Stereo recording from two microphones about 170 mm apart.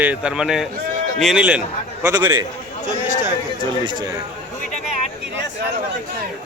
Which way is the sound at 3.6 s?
25° right (ahead or behind).